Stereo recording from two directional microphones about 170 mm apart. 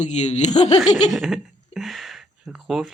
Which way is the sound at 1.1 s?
5° right (ahead or behind).